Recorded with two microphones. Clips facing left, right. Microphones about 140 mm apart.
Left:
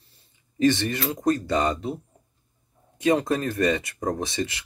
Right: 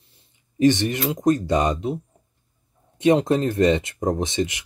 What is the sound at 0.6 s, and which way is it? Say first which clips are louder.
Speech: right 3 dB; 15° right (ahead or behind).